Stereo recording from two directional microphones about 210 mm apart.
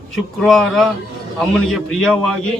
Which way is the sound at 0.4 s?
Centre (ahead or behind).